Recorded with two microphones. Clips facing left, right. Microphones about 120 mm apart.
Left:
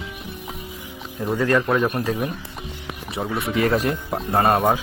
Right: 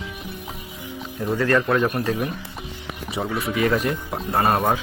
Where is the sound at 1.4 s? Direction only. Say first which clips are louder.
Even; 10° left (ahead or behind).